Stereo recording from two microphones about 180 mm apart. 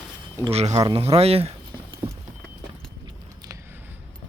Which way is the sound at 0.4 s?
35° right (ahead or behind).